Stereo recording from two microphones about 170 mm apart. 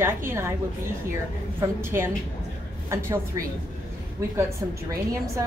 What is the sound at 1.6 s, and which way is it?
A woman's voice, 15° right (ahead or behind).